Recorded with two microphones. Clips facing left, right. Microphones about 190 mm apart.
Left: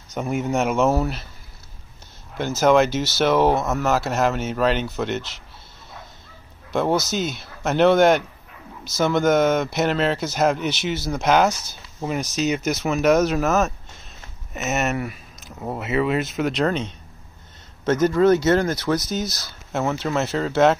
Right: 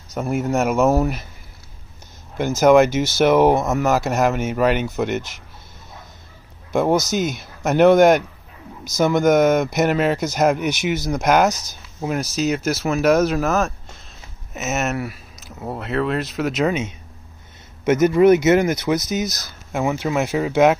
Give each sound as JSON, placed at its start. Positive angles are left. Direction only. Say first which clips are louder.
{"t": 0.1, "sound": "speech", "louder": "right 2 dB", "side_deg": 0}
{"t": 2.6, "sound": "speech", "louder": "right 4 dB", "side_deg": -10}
{"t": 2.9, "sound": "speech", "louder": "right 3 dB", "side_deg": -50}
{"t": 3.2, "sound": "speech", "louder": "right 4 dB", "side_deg": -15}
{"t": 6.7, "sound": "speech", "louder": "right 3 dB", "side_deg": -10}